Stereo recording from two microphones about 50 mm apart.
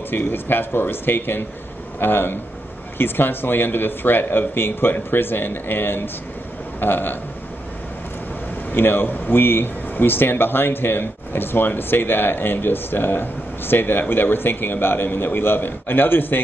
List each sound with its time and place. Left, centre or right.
0.1 s speech: left
8.7 s speech: left